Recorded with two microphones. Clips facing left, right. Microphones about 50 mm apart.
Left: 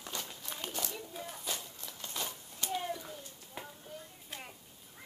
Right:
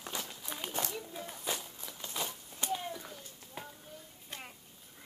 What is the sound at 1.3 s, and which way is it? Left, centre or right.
Walk, centre.